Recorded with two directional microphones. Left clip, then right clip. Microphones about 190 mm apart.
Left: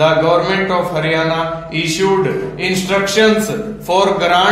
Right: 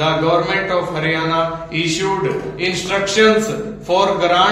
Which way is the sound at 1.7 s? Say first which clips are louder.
Left 6 dB; 40° left (ahead or behind).